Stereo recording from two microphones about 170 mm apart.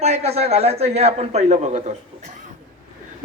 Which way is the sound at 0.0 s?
40° right (ahead or behind).